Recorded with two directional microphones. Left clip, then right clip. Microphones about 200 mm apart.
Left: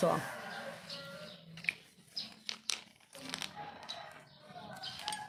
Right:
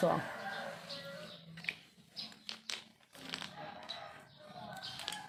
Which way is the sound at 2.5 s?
Centre (ahead or behind).